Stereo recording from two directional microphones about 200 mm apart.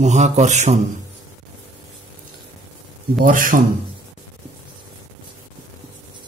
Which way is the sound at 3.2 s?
40° right (ahead or behind).